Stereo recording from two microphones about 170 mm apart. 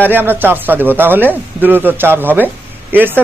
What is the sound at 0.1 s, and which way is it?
Speech, 10° right (ahead or behind).